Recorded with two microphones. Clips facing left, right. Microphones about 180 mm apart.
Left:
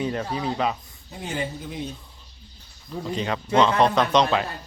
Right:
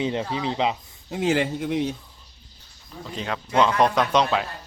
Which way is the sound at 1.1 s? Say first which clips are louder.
Right 8 dB; 80° right.